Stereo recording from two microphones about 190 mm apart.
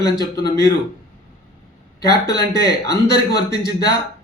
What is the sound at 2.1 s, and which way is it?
A man's voice, 60° left (ahead or behind).